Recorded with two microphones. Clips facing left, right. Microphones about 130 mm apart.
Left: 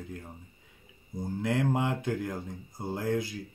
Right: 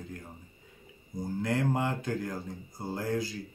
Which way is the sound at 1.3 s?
15° left (ahead or behind).